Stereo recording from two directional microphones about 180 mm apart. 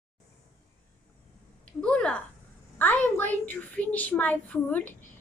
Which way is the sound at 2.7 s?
10° left (ahead or behind).